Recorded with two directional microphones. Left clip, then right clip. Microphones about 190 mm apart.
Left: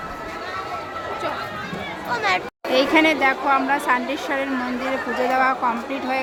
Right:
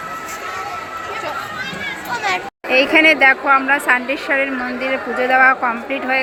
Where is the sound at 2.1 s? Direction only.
30° left (ahead or behind).